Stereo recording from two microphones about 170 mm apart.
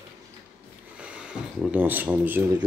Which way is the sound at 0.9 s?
5° right (ahead or behind).